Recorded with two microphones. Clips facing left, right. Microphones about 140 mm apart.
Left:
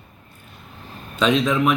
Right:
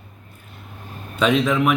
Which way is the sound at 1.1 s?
10° right (ahead or behind).